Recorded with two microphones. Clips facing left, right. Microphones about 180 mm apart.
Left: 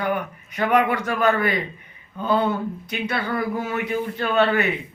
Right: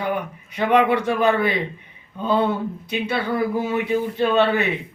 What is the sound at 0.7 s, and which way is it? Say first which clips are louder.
Speech: right 3 dB; 30° right (ahead or behind).